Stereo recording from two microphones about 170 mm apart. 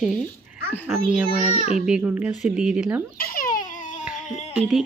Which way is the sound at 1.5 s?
40° left (ahead or behind).